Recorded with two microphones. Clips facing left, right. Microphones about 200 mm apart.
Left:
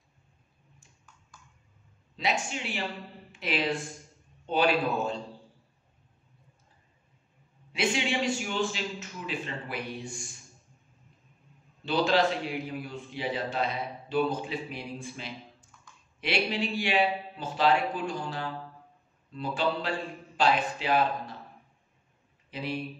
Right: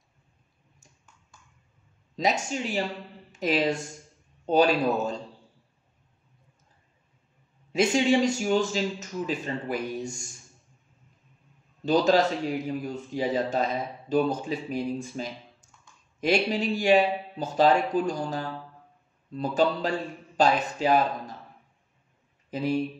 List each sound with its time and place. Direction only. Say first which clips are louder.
2.1 s a man's voice: right 4 dB; 40° right (ahead or behind)
7.7 s a man's voice: right 7 dB; 40° right (ahead or behind)
11.8 s a man's voice: right 4 dB; 40° right (ahead or behind)
22.5 s speech: right 7 dB; 45° right (ahead or behind)